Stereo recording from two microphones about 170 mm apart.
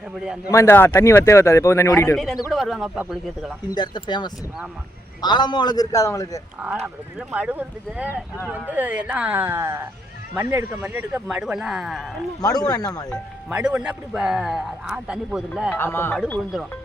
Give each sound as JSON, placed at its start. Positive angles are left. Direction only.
{"t": 0.2, "sound": "a man's voice", "side_deg": -5}
{"t": 0.5, "sound": "a man's voice", "side_deg": 15}
{"t": 2.5, "sound": "a man's voice", "side_deg": 0}
{"t": 3.7, "sound": "a man's voice", "side_deg": 25}
{"t": 5.2, "sound": "a man's voice", "side_deg": 25}
{"t": 6.8, "sound": "speech", "side_deg": -10}
{"t": 12.4, "sound": "a man's voice", "side_deg": 20}
{"t": 13.5, "sound": "a man's voice", "side_deg": -5}
{"t": 15.7, "sound": "a man's voice", "side_deg": 15}
{"t": 16.1, "sound": "a man's voice", "side_deg": 0}